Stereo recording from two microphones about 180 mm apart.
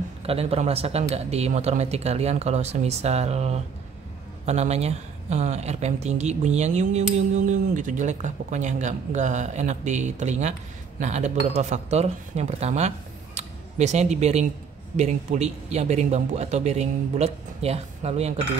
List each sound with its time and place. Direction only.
0.3 s speech: 35° right (ahead or behind)